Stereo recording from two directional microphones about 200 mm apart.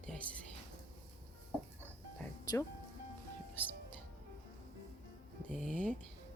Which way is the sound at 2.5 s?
20° left (ahead or behind).